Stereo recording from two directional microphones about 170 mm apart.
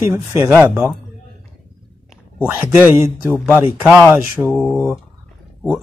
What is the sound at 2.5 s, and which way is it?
A man's voice, 10° right (ahead or behind).